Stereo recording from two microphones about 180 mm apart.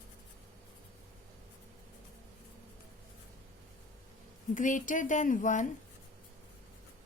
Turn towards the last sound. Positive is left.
turn(degrees=45)  # may be behind; listen again after turning